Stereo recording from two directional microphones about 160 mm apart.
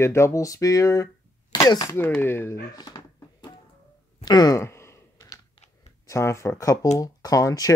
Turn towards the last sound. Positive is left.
turn(degrees=20)  # may be behind; listen again after turning